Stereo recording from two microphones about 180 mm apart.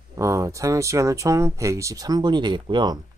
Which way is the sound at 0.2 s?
15° right (ahead or behind).